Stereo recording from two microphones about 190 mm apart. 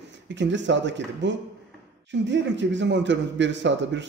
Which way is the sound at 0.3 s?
70° right (ahead or behind).